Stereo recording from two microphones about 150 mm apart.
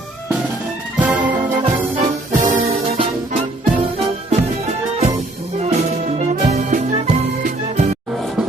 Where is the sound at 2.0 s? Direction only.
60° right (ahead or behind).